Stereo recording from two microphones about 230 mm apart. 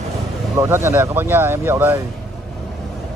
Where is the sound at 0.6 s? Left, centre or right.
Centre.